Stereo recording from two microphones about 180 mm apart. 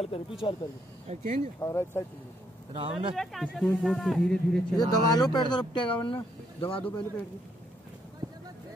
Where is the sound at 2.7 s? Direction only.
30° right (ahead or behind).